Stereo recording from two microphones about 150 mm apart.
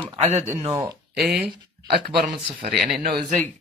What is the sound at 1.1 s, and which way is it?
Speech, 90° right.